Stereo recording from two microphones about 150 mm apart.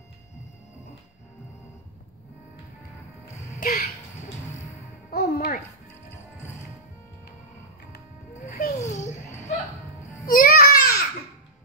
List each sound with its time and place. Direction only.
3.5 s music: 75° left (ahead or behind)
5.1 s music: 75° left (ahead or behind)
8.5 s music: 85° left
8.7 s babbling: 50° left (ahead or behind)
10.2 s a sound: 75° left (ahead or behind)